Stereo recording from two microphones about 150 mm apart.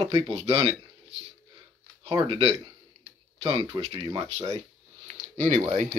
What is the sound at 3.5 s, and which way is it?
Speech, 25° right (ahead or behind).